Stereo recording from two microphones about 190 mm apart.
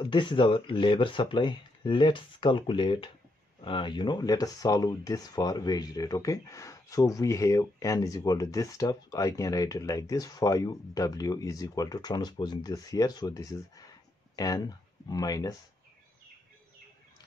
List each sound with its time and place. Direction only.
0.0 s speech: 25° left (ahead or behind)